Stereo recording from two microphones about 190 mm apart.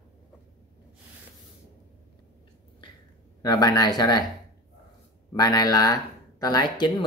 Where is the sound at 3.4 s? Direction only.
20° left (ahead or behind).